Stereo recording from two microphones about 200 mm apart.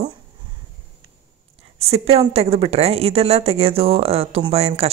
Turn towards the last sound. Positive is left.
turn(degrees=-30)  # may be behind; listen again after turning